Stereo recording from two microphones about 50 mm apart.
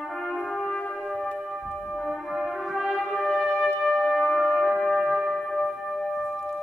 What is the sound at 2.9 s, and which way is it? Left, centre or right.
Brass instrument, centre.